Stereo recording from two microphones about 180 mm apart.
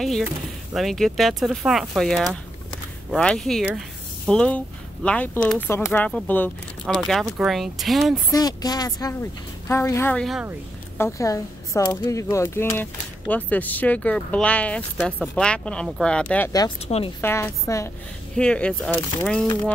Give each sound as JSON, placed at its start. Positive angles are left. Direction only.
{"t": 0.0, "sound": "speech", "side_deg": 0}
{"t": 8.3, "sound": "speech", "side_deg": 20}
{"t": 16.8, "sound": "speech", "side_deg": 35}
{"t": 17.2, "sound": "speech", "side_deg": 15}
{"t": 18.3, "sound": "speech", "side_deg": 5}